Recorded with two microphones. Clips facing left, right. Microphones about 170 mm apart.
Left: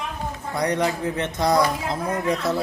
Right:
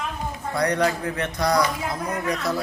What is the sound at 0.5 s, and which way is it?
Speech, 20° left (ahead or behind).